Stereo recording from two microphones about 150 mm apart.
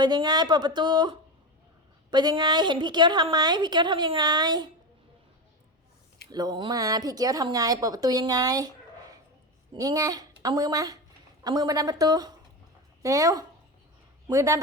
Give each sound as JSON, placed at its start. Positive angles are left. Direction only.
{"t": 0.0, "sound": "speech", "side_deg": -30}
{"t": 6.3, "sound": "speech", "side_deg": -30}